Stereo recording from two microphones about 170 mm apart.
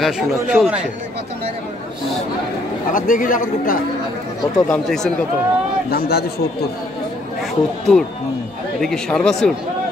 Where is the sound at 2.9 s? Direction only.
50° left (ahead or behind).